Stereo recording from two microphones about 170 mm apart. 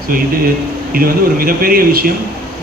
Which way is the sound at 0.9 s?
60° right (ahead or behind).